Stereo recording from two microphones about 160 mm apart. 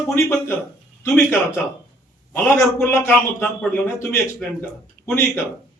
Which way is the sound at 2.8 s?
15° left (ahead or behind).